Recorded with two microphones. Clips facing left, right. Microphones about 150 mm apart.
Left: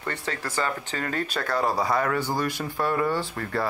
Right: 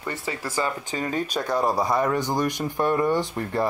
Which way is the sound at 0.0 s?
10° right (ahead or behind).